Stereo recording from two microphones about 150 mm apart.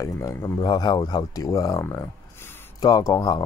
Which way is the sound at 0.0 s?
20° left (ahead or behind).